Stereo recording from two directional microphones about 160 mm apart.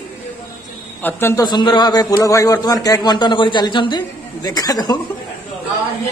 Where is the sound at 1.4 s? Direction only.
25° left (ahead or behind).